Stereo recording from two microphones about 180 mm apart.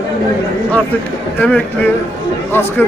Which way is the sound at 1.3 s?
10° left (ahead or behind).